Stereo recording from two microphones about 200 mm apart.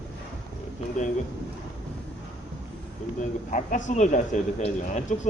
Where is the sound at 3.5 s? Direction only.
40° left (ahead or behind).